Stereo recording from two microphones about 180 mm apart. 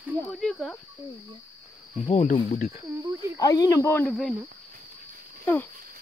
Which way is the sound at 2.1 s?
40° left (ahead or behind).